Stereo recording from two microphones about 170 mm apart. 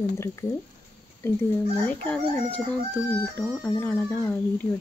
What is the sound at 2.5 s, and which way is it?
Speech, 10° left (ahead or behind).